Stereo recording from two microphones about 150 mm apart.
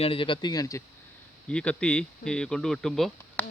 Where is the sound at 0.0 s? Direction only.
35° left (ahead or behind).